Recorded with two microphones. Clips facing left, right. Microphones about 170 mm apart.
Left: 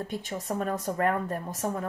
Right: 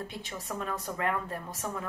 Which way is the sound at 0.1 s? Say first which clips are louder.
Left 6 dB; 45° left (ahead or behind).